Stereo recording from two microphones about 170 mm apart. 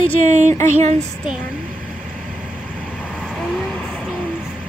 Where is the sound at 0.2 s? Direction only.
45° right (ahead or behind).